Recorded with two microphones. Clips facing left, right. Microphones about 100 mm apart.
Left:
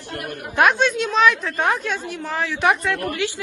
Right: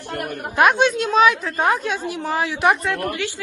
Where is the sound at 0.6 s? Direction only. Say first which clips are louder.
Right 1 dB; centre (ahead or behind).